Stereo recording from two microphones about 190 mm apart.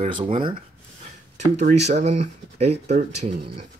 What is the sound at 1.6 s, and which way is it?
Speech, 40° right (ahead or behind).